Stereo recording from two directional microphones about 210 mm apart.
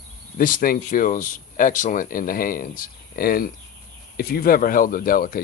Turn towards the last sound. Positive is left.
turn(degrees=45)  # may be behind; listen again after turning